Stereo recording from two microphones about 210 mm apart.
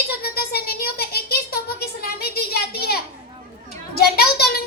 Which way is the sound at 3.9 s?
45° left (ahead or behind).